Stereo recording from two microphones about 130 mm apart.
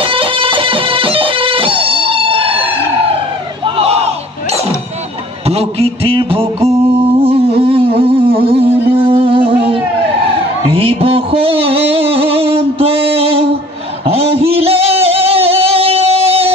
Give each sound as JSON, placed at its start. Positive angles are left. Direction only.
{"t": 0.0, "sound": "music", "side_deg": -45}
{"t": 3.6, "sound": "crowd", "side_deg": -45}
{"t": 5.5, "sound": "a sound", "side_deg": -50}
{"t": 10.7, "sound": "music", "side_deg": -45}